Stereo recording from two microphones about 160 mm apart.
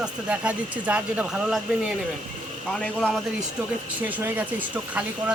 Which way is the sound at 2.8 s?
5° left (ahead or behind).